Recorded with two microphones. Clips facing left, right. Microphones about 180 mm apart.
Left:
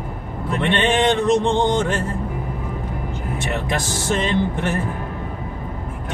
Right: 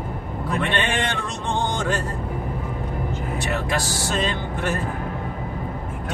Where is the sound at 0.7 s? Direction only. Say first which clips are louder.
Left 11 dB; 20° left (ahead or behind).